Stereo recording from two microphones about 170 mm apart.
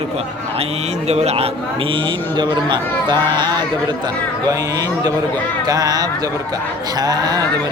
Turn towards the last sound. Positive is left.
turn(degrees=-25)  # may be behind; listen again after turning